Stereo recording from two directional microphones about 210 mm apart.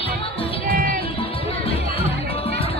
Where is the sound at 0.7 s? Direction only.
45° right (ahead or behind).